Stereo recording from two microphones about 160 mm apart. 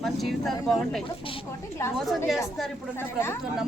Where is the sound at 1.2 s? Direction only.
35° left (ahead or behind).